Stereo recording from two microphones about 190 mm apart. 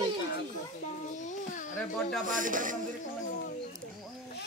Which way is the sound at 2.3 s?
45° right (ahead or behind).